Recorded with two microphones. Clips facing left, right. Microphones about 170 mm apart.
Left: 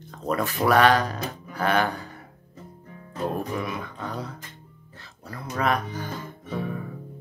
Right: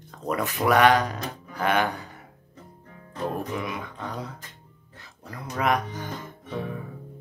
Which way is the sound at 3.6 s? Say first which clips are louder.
Left 1 dB; 15° right (ahead or behind).